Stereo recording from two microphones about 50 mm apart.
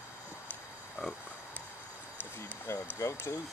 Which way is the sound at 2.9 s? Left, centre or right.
Left.